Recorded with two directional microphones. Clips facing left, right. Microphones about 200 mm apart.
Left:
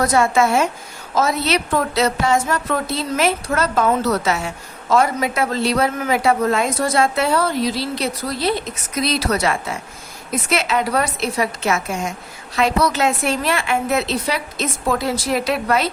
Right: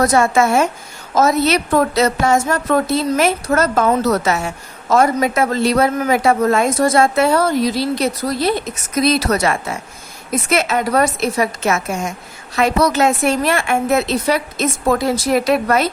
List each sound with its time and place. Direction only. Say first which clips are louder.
0.0 s a man's voice: right 2 dB; 45° right (ahead or behind)